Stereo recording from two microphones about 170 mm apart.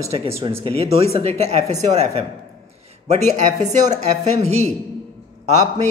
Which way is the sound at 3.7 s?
45° right (ahead or behind).